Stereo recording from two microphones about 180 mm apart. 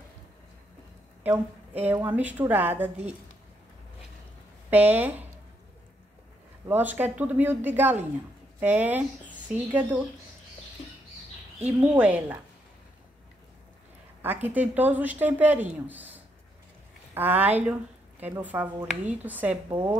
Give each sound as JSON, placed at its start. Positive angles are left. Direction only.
{"t": 1.2, "sound": "a woman's voice", "side_deg": -10}
{"t": 4.6, "sound": "speech", "side_deg": -10}
{"t": 6.7, "sound": "speech", "side_deg": -10}
{"t": 12.0, "sound": "speech", "side_deg": -5}
{"t": 14.2, "sound": "speech", "side_deg": -10}
{"t": 17.1, "sound": "speech", "side_deg": -10}